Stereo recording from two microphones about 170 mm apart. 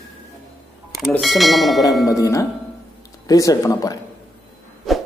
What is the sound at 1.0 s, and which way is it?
Speech, centre (ahead or behind).